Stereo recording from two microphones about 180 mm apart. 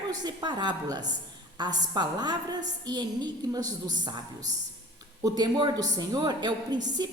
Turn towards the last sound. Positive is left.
turn(degrees=-25)  # may be behind; listen again after turning